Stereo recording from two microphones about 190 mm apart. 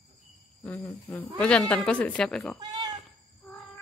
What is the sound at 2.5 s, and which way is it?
Speech, 20° right (ahead or behind).